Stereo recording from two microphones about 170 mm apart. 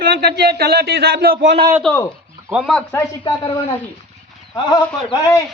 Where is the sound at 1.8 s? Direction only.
10° left (ahead or behind).